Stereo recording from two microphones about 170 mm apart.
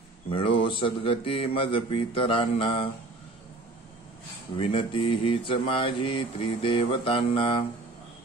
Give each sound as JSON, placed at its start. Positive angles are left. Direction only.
{"t": 0.3, "sound": "mantra", "side_deg": 30}
{"t": 4.6, "sound": "mantra", "side_deg": 30}